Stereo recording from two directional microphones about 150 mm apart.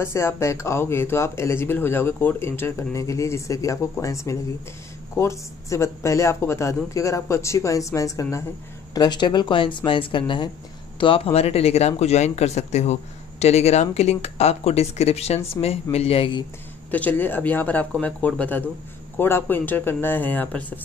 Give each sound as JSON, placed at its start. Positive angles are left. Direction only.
{"t": 0.0, "sound": "speech", "side_deg": 15}
{"t": 16.9, "sound": "speech", "side_deg": 10}